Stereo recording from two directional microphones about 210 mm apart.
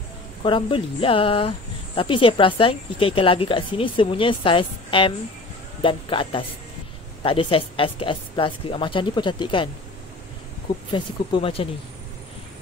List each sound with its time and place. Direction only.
0.4 s speech: 25° left (ahead or behind)
10.9 s speech: 25° left (ahead or behind)